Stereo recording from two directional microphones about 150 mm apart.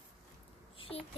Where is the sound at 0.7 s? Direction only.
40° left (ahead or behind).